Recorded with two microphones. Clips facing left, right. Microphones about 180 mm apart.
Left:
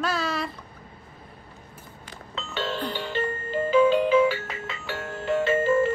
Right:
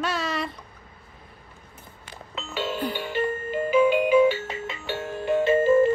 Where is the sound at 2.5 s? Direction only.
5° right (ahead or behind).